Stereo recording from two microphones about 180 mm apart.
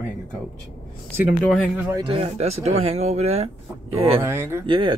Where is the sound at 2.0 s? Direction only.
35° right (ahead or behind).